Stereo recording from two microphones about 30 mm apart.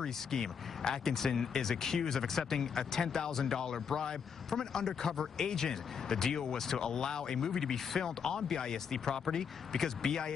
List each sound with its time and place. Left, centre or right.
0.0 s speech: centre